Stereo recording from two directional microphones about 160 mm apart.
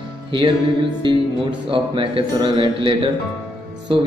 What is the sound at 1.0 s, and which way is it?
A man's voice, 30° right (ahead or behind).